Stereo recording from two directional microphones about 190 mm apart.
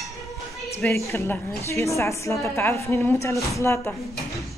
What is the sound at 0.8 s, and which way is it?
A woman's voice, 15° left (ahead or behind).